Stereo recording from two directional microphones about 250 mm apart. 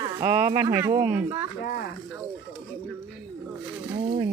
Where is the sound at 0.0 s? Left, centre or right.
Centre.